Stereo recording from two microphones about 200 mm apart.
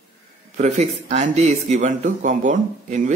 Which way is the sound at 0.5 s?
35° right (ahead or behind).